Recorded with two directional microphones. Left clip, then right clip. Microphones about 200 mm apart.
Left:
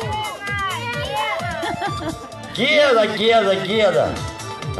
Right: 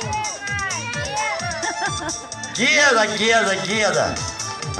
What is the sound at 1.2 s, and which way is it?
Music, 75° left (ahead or behind).